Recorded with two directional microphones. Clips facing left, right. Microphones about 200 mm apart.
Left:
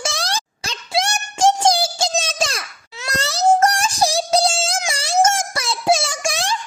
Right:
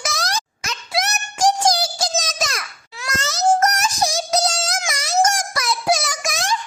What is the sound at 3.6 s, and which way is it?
Synthetic singing, 30° left (ahead or behind).